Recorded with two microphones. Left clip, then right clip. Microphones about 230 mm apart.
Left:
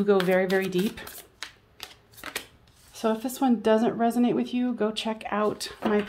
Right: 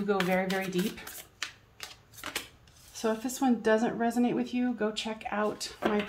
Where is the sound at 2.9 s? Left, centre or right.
Left.